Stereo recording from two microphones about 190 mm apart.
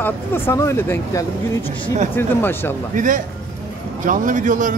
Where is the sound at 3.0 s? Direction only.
40° right (ahead or behind).